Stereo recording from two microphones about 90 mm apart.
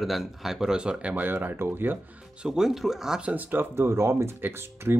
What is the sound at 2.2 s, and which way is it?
Speech, 10° right (ahead or behind).